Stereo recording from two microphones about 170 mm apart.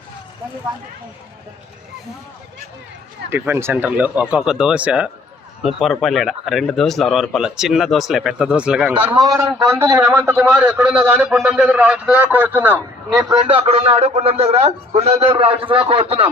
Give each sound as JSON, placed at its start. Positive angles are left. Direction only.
{"t": 3.2, "sound": "a man's voice", "side_deg": -10}
{"t": 9.1, "sound": "a man's voice", "side_deg": -20}
{"t": 13.5, "sound": "a man's voice", "side_deg": -35}